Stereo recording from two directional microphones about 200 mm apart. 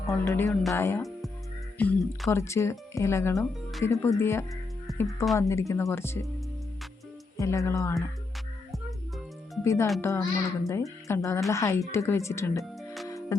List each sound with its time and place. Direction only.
0.1 s speech: 15° left (ahead or behind)
2.3 s speech: 15° left (ahead or behind)
5.0 s speech: centre (ahead or behind)
5.4 s speech: 15° left (ahead or behind)
7.3 s speech: 15° left (ahead or behind)
9.6 s speech: 15° left (ahead or behind)